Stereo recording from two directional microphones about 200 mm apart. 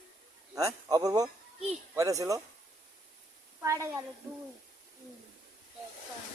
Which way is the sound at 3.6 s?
15° right (ahead or behind).